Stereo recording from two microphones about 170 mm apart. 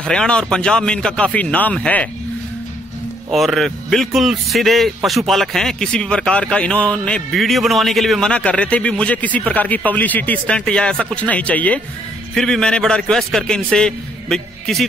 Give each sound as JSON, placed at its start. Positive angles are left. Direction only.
{"t": 0.0, "sound": "speech", "side_deg": 5}
{"t": 3.3, "sound": "speech", "side_deg": 0}